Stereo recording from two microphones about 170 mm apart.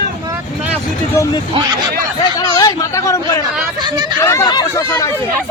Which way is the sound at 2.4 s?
20° left (ahead or behind).